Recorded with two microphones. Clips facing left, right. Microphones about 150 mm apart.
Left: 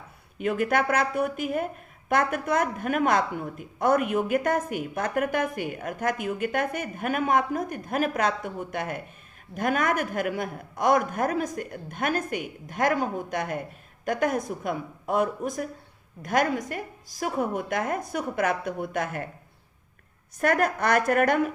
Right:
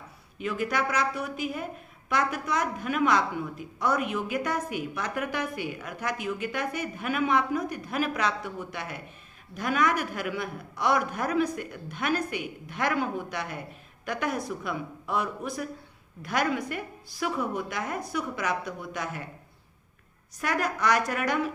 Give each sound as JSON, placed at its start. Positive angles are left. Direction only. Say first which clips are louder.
{"t": 0.3, "sound": "a woman's voice", "louder": "left 5 dB", "side_deg": 55}
{"t": 20.4, "sound": "a woman's voice", "louder": "left 4 dB", "side_deg": 50}